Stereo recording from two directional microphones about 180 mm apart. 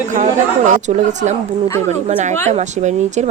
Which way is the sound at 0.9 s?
40° right (ahead or behind).